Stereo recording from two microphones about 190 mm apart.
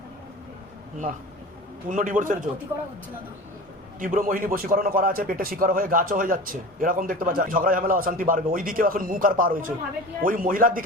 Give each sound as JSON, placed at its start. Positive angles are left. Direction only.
{"t": 1.9, "sound": "a man's voice", "side_deg": -45}
{"t": 4.0, "sound": "a man's voice", "side_deg": -45}